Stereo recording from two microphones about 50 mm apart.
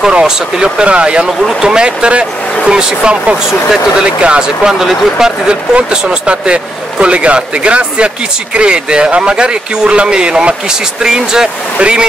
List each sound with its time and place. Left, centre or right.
0.1 s speech: centre
4.7 s speech: centre
5.5 s speech: centre